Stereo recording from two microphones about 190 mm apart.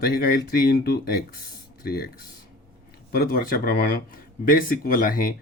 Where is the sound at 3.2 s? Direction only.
50° left (ahead or behind).